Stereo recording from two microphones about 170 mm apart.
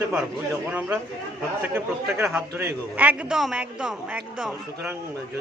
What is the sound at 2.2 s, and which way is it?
Speech, 5° right (ahead or behind).